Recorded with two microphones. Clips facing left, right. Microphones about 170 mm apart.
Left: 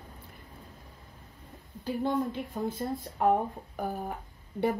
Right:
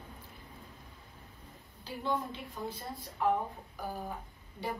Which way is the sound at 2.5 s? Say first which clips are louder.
Left 8 dB; 55° left (ahead or behind).